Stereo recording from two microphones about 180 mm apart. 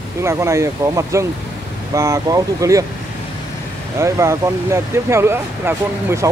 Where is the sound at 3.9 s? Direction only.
15° right (ahead or behind).